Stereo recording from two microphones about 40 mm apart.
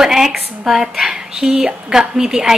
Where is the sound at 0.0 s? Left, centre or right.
Centre.